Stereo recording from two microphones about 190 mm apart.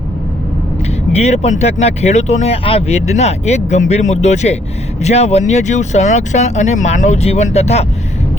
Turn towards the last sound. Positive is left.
turn(degrees=35)  # may be behind; listen again after turning